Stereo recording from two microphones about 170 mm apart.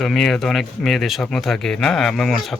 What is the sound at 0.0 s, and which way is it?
Speech, centre (ahead or behind).